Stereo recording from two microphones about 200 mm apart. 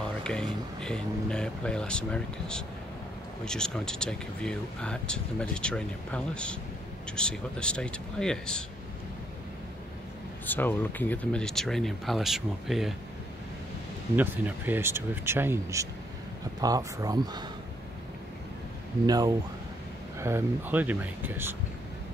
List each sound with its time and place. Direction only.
0.2 s speech: 5° left (ahead or behind)
10.4 s speech: 10° left (ahead or behind)
14.1 s speech: 10° right (ahead or behind)
19.0 s speech: 20° right (ahead or behind)